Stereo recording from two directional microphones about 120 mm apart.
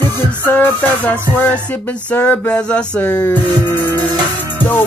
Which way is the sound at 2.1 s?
15° left (ahead or behind).